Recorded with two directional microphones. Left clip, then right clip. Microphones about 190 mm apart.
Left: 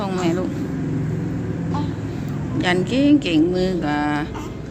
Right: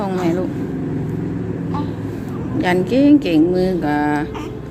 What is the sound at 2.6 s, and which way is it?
Speech, 15° right (ahead or behind).